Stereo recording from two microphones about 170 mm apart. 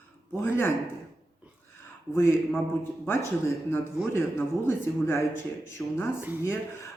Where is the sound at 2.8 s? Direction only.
15° left (ahead or behind).